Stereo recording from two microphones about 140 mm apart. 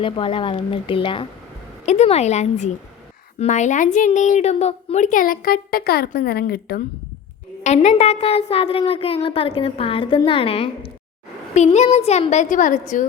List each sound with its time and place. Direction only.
0.0 s speech: 40° left (ahead or behind)
1.9 s a woman's voice: 50° left (ahead or behind); by 6.8 s 90° left
7.6 s a woman's voice: 55° left (ahead or behind)
11.5 s a woman's voice: 55° left (ahead or behind)